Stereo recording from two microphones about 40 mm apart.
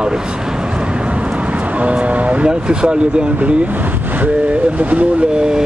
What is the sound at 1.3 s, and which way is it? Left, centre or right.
Vehicle, right.